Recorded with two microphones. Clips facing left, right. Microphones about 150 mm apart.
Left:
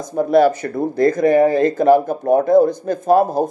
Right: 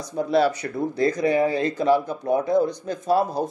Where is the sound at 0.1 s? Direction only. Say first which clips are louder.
Left 7 dB; 50° left (ahead or behind).